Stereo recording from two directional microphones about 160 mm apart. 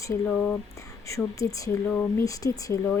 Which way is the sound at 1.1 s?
20° left (ahead or behind).